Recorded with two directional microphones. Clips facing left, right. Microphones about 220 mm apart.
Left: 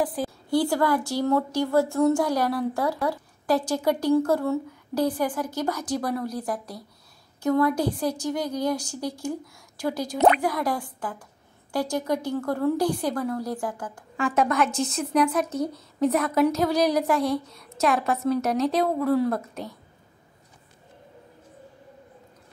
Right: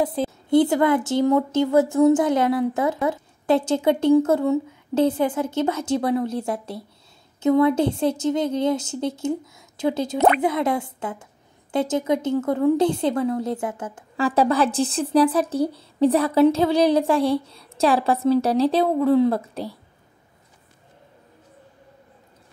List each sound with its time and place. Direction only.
0.0 s a woman's voice: 25° right (ahead or behind)